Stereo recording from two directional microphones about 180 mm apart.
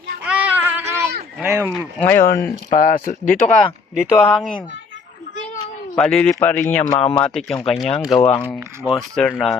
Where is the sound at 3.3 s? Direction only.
5° left (ahead or behind).